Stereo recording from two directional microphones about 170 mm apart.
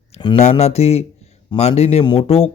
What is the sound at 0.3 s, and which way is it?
A man's voice, 40° left (ahead or behind).